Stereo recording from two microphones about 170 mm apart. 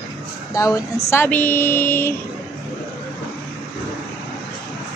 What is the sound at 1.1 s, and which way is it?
Music, 10° left (ahead or behind).